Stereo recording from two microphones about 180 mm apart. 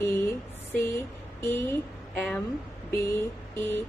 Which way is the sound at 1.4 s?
15° left (ahead or behind).